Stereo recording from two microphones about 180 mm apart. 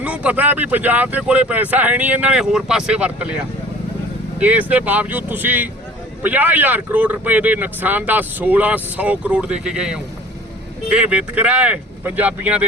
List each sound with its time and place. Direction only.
0.0 s speech: 5° right (ahead or behind)